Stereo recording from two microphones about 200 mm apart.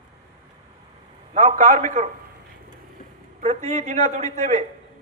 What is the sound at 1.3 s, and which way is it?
Speech, 35° right (ahead or behind).